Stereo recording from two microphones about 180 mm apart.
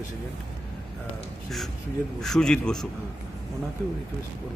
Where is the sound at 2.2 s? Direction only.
5° left (ahead or behind).